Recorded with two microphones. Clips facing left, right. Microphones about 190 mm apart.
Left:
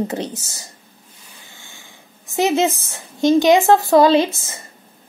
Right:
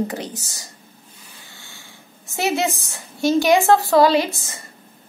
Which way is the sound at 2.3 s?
15° left (ahead or behind).